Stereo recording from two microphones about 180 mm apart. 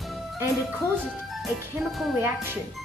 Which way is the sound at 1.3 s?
Centre (ahead or behind).